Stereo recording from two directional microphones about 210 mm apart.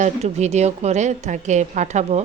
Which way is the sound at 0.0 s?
30° right (ahead or behind).